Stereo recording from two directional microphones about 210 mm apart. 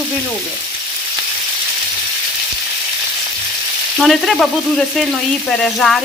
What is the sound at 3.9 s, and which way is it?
Frying, centre (ahead or behind).